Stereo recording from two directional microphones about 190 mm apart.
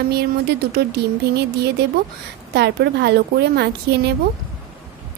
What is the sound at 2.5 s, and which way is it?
Speech, 60° right (ahead or behind).